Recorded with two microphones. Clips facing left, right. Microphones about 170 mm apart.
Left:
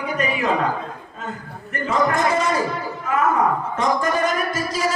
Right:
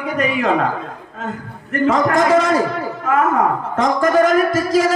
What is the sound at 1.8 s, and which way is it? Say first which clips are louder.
Speech: right 5 dB; 90° right.